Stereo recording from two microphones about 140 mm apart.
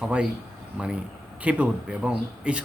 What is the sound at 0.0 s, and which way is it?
Speech, 5° right (ahead or behind).